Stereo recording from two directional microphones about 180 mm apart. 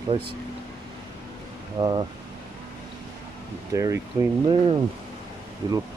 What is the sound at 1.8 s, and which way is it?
Speech, 25° right (ahead or behind).